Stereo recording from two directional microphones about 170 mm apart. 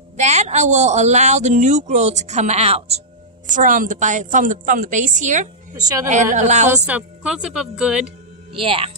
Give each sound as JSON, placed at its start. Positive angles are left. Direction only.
{"t": 0.2, "sound": "speech", "side_deg": -40}
{"t": 3.4, "sound": "speech", "side_deg": -50}
{"t": 5.8, "sound": "a woman's voice", "side_deg": -20}
{"t": 6.3, "sound": "speech", "side_deg": -45}
{"t": 6.9, "sound": "a woman's voice", "side_deg": -5}
{"t": 8.5, "sound": "speech", "side_deg": -30}